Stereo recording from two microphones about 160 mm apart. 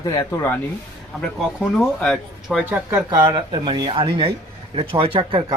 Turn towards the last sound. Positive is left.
turn(degrees=-35)  # may be behind; listen again after turning